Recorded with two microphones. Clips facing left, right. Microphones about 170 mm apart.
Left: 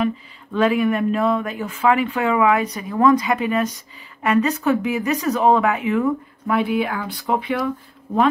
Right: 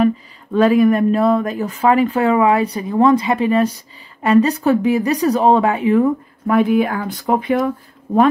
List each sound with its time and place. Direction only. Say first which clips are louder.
0.0 s a woman's voice: right 6 dB; 40° right (ahead or behind)